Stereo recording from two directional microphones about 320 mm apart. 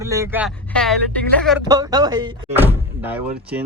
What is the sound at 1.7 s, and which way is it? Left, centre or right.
Speech, centre.